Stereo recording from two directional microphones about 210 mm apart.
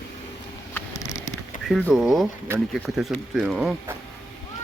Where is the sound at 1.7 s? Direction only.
Centre (ahead or behind).